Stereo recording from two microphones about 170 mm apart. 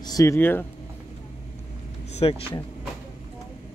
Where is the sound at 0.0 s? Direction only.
20° left (ahead or behind).